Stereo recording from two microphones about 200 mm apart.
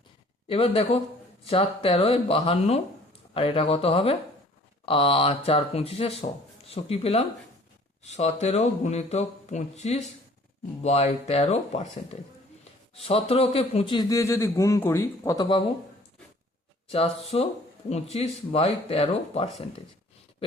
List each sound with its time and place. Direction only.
0.4 s a man's voice: 30° left (ahead or behind)
12.9 s a man's voice: 30° left (ahead or behind)
16.9 s speech: 30° left (ahead or behind)